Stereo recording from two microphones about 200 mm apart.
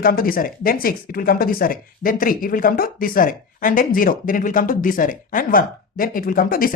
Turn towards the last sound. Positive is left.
turn(degrees=45)  # may be behind; listen again after turning